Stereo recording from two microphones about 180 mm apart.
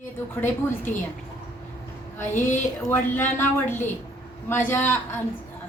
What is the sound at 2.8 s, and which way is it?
A woman's voice, 15° left (ahead or behind).